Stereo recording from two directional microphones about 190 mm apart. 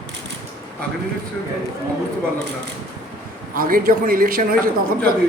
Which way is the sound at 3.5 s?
50° right (ahead or behind).